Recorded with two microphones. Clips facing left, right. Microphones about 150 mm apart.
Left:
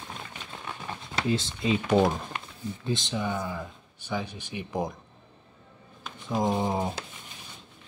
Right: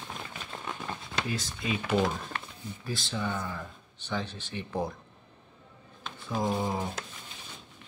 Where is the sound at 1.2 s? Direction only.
25° left (ahead or behind).